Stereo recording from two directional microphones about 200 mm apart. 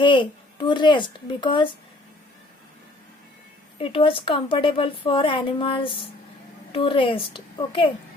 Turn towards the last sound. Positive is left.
turn(degrees=25)  # may be behind; listen again after turning